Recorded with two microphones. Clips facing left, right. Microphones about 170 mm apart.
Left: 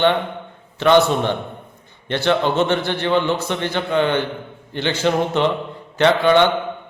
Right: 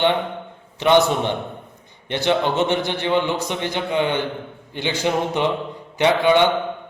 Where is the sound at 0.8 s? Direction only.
15° right (ahead or behind).